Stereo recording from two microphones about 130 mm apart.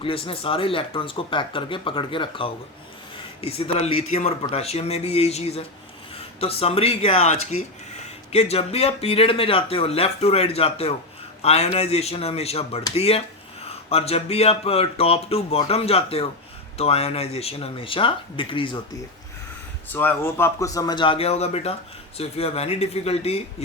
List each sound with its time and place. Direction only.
0.0 s speech: 45° left (ahead or behind)
19.9 s a man's voice: 15° left (ahead or behind); by 23.6 s 50° left (ahead or behind)